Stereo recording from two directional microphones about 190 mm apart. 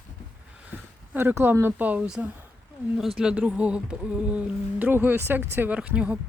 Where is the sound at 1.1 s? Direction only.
10° right (ahead or behind).